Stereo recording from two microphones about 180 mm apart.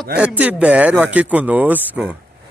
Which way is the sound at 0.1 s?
5° right (ahead or behind).